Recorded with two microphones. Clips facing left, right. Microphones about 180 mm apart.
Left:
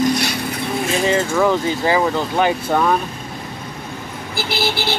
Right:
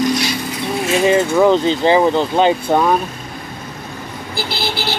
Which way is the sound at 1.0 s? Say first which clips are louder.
Right 5 dB; 15° right (ahead or behind).